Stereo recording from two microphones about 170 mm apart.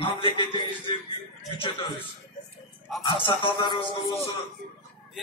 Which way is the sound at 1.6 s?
30° left (ahead or behind).